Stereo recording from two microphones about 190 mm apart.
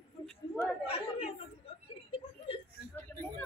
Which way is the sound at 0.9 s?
30° left (ahead or behind).